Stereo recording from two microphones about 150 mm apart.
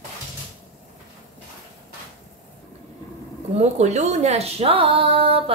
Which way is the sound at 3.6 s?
50° right (ahead or behind).